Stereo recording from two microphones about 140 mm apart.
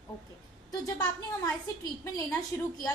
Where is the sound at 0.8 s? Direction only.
30° left (ahead or behind).